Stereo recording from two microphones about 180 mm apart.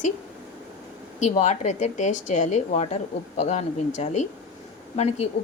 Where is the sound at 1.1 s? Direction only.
40° left (ahead or behind).